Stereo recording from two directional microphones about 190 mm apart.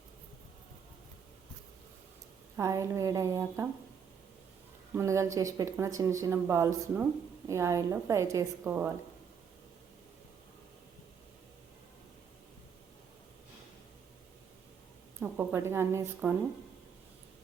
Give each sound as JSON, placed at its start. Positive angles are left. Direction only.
{"t": 2.6, "sound": "speech", "side_deg": -15}
{"t": 4.9, "sound": "speech", "side_deg": -15}
{"t": 15.2, "sound": "speech", "side_deg": -10}